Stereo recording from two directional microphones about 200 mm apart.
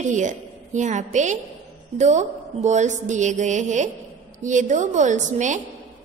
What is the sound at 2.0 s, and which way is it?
Mantra, 35° right (ahead or behind).